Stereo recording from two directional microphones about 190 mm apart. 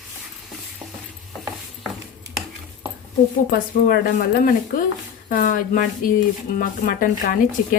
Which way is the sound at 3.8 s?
45° left (ahead or behind).